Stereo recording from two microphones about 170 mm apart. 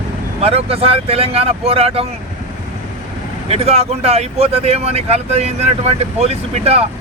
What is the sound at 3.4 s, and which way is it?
Speech, 35° right (ahead or behind).